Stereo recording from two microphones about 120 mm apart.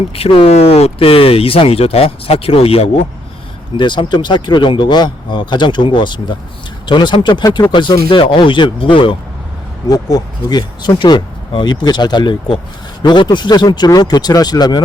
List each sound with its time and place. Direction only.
0.2 s speech: 55° left (ahead or behind)
3.8 s speech: 40° left (ahead or behind)
9.9 s speech: 30° left (ahead or behind)